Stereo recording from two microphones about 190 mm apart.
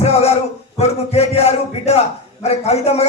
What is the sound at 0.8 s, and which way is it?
A man's voice, 35° left (ahead or behind).